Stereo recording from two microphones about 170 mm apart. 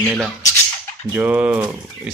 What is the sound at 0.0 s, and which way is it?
Speech, centre (ahead or behind).